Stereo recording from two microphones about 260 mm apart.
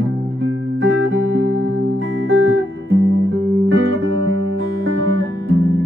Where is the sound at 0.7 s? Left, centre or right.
Right.